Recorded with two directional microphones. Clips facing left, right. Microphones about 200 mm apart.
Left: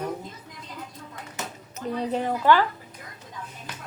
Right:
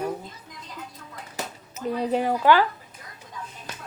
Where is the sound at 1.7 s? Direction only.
10° right (ahead or behind).